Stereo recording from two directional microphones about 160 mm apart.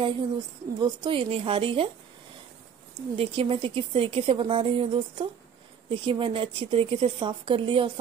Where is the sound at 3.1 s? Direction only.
35° right (ahead or behind).